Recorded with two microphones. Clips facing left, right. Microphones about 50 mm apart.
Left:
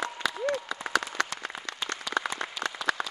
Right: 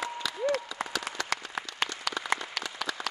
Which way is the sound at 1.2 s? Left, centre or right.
Left.